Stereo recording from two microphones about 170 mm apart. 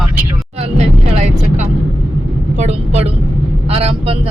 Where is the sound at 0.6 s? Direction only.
40° right (ahead or behind).